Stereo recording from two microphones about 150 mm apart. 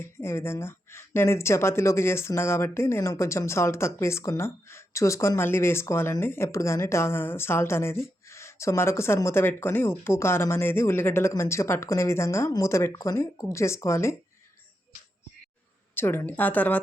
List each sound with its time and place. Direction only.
0.0 s speech: 15° left (ahead or behind)
16.0 s speech: 15° left (ahead or behind)